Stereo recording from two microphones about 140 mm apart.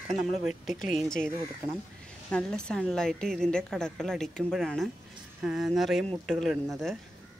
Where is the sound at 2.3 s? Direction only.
5° left (ahead or behind).